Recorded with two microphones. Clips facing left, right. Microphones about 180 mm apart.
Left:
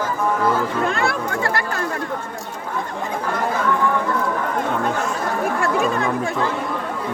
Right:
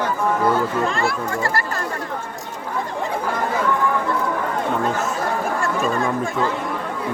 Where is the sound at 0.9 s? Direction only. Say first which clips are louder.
Even; 60° left (ahead or behind).